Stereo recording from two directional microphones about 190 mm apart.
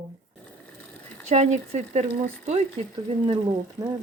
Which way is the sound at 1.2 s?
40° right (ahead or behind).